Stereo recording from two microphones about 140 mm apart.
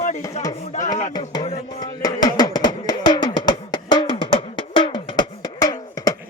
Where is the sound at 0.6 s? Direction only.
60° left (ahead or behind).